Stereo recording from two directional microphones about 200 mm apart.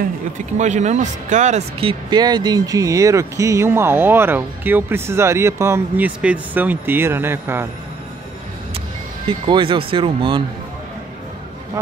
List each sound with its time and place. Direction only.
0.6 s speech: 35° right (ahead or behind); by 7.6 s 10° right (ahead or behind)
9.5 s speech: 25° right (ahead or behind)